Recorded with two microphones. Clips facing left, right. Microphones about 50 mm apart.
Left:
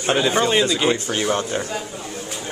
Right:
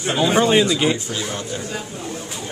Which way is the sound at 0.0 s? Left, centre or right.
Left.